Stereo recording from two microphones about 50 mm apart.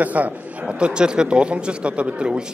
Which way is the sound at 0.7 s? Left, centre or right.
Centre.